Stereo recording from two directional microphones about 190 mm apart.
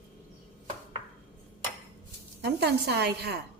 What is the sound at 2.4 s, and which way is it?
Speech, 65° right (ahead or behind).